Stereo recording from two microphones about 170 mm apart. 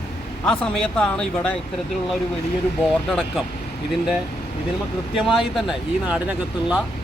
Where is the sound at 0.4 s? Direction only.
5° left (ahead or behind).